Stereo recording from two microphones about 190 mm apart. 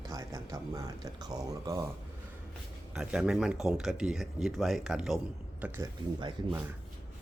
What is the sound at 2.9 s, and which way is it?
Speech, 5° right (ahead or behind).